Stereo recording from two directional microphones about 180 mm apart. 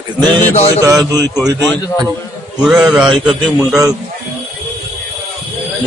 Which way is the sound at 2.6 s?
5° right (ahead or behind).